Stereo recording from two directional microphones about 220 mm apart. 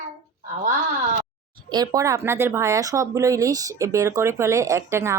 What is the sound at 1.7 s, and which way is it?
Speech, 15° right (ahead or behind).